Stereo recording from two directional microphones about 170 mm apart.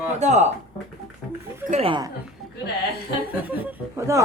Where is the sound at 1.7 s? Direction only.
35° right (ahead or behind).